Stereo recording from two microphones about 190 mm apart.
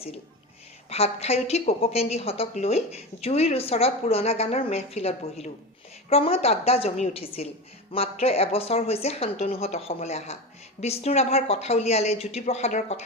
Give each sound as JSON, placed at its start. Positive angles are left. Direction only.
{"t": 0.9, "sound": "a woman's voice", "side_deg": 30}